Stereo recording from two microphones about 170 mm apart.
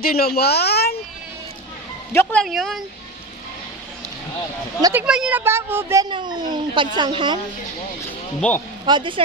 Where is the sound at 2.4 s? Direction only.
Centre (ahead or behind).